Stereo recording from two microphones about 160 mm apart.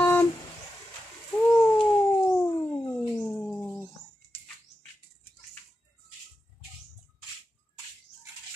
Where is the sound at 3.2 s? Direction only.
5° left (ahead or behind).